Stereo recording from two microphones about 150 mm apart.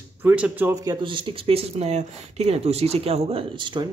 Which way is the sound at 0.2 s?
10° right (ahead or behind).